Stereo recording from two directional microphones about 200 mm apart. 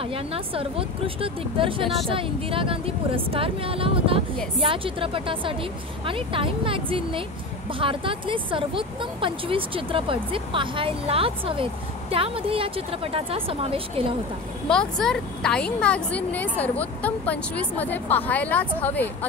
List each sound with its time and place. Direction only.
0.0 s speech: 30° right (ahead or behind)
14.7 s a woman's voice: 5° left (ahead or behind)